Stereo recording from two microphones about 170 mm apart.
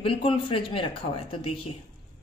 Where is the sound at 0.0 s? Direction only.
35° left (ahead or behind).